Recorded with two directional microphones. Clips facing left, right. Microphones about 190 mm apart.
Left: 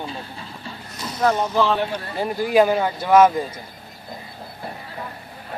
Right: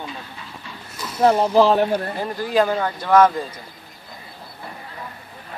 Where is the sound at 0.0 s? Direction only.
35° left (ahead or behind).